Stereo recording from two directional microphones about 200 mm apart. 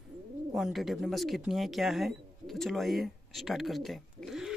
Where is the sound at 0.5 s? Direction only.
Centre (ahead or behind).